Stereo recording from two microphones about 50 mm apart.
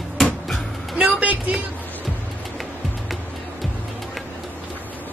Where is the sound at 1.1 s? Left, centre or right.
Right.